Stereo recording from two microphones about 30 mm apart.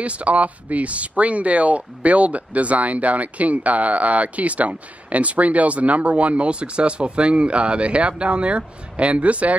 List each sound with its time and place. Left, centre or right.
0.0 s speech: right